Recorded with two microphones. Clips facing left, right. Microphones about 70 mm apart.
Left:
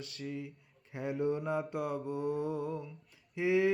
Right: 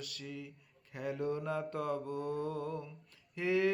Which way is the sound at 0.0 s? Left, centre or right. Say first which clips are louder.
Left 4 dB; left.